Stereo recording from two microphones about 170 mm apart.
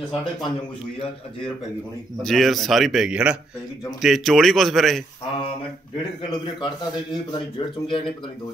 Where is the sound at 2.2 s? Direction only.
Centre (ahead or behind).